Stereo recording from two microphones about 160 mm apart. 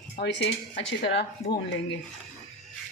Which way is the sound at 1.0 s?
90° left.